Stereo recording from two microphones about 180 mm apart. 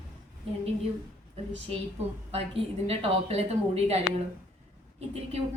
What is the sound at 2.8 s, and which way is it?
A woman's voice, 35° right (ahead or behind).